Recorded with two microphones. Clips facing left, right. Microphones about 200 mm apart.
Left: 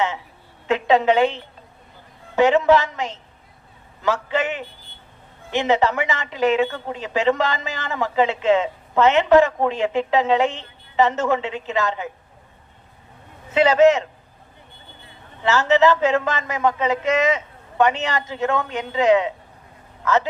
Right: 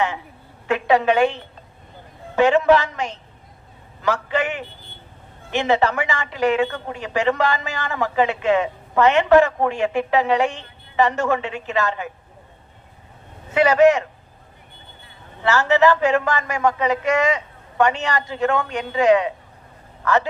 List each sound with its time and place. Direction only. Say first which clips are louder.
0.7 s a woman's voice: left 1 dB; 20° left (ahead or behind)
13.5 s speech: even; 25° left (ahead or behind)
15.4 s speech: even; 20° left (ahead or behind)